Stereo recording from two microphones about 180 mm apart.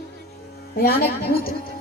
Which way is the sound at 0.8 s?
60° left (ahead or behind).